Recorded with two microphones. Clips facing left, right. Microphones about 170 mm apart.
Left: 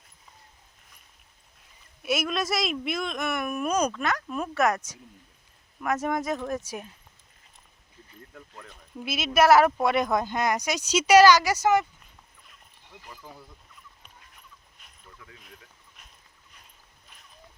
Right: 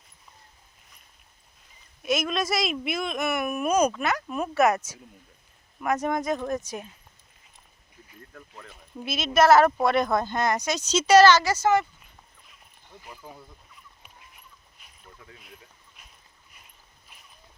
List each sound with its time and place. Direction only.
2.0 s speech: 5° left (ahead or behind)
8.3 s speech: centre (ahead or behind)
9.0 s speech: 10° left (ahead or behind)
13.1 s speech: 10° right (ahead or behind)
15.0 s a sound: 30° right (ahead or behind)